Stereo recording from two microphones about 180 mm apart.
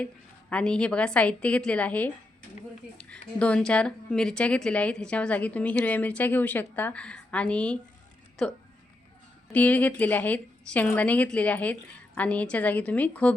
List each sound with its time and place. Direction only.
0.5 s speech: 5° left (ahead or behind)